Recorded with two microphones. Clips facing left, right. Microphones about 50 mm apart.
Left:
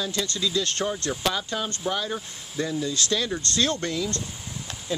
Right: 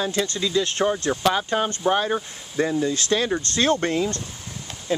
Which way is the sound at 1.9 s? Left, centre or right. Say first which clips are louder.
Right 8 dB; right.